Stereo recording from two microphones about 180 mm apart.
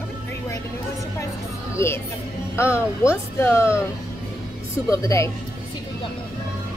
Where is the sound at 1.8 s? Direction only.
15° left (ahead or behind).